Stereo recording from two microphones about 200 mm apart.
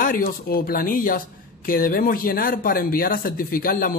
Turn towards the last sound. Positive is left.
turn(degrees=45)  # may be behind; listen again after turning